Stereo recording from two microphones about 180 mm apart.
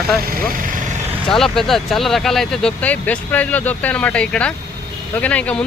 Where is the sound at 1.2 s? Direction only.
Centre (ahead or behind).